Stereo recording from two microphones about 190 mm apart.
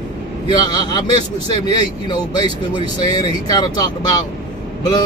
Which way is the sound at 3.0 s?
20° left (ahead or behind).